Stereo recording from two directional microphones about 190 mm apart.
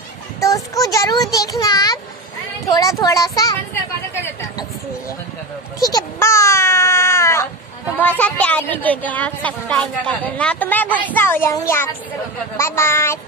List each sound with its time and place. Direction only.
0.4 s a child's voice: 15° left (ahead or behind)
5.8 s baby cry: 20° left (ahead or behind)
8.0 s speech: 10° left (ahead or behind)